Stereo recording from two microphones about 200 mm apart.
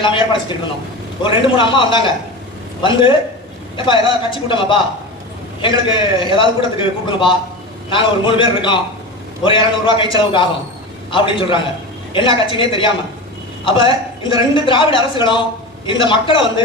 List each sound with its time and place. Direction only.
0.0 s a man's voice: 25° left (ahead or behind)
4.3 s a man's voice: 25° left (ahead or behind)